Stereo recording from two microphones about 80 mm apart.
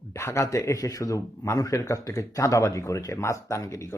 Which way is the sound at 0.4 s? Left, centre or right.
Left.